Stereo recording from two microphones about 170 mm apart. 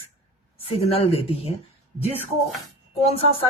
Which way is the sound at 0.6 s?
35° left (ahead or behind).